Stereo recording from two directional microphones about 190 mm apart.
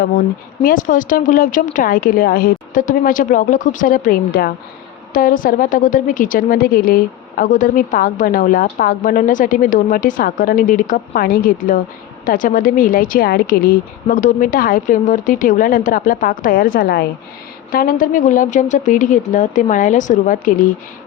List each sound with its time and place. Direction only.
0.6 s a woman's voice: 45° left (ahead or behind)